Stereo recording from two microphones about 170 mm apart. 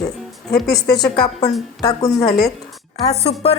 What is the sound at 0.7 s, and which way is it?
Speech, 20° left (ahead or behind).